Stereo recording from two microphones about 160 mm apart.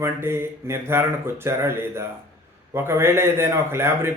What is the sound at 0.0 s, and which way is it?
A man's voice, 15° right (ahead or behind).